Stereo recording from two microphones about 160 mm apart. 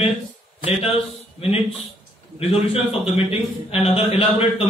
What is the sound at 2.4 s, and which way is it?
A man's voice, 40° left (ahead or behind).